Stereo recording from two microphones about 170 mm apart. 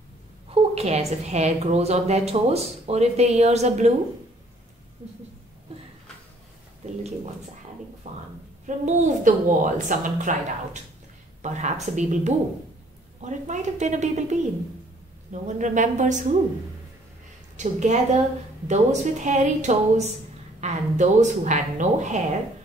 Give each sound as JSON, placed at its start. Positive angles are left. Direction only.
{"t": 0.5, "sound": "a woman's voice", "side_deg": -40}
{"t": 8.0, "sound": "a woman's voice", "side_deg": -45}
{"t": 15.4, "sound": "a woman's voice", "side_deg": -45}
{"t": 17.6, "sound": "a woman's voice", "side_deg": -45}